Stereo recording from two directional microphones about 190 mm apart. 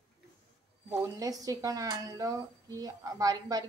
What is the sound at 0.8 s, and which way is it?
Speech, 15° right (ahead or behind).